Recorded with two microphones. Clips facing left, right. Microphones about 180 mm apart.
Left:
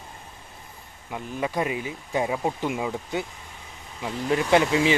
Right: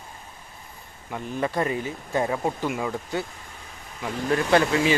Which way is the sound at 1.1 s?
10° left (ahead or behind).